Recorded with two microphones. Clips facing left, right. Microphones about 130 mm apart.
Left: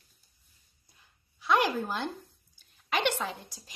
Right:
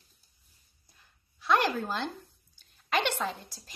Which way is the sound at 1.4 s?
10° left (ahead or behind).